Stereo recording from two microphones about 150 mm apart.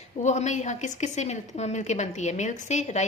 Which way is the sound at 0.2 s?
50° left (ahead or behind).